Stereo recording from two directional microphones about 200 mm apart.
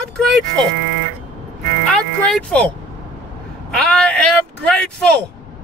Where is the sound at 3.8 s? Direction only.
5° left (ahead or behind).